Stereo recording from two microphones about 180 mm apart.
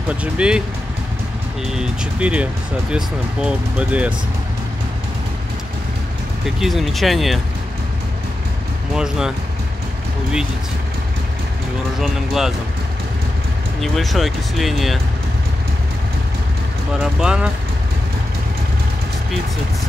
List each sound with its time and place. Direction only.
0.2 s speech: 5° right (ahead or behind)
1.7 s speech: 5° right (ahead or behind)
6.4 s speech: centre (ahead or behind)
8.9 s speech: 5° right (ahead or behind)
12.0 s speech: centre (ahead or behind)
13.7 s speech: centre (ahead or behind)
17.0 s speech: 5° right (ahead or behind)